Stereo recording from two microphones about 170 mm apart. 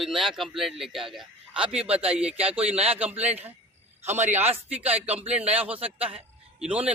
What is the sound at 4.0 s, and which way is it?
Speech, 15° right (ahead or behind).